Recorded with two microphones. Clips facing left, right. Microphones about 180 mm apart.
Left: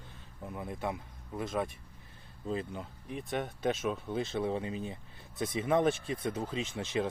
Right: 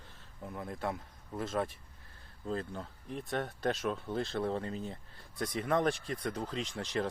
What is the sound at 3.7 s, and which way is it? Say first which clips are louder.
Speech: left 2 dB; centre (ahead or behind).